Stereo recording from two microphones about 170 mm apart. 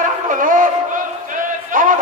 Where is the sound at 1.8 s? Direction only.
55° right (ahead or behind).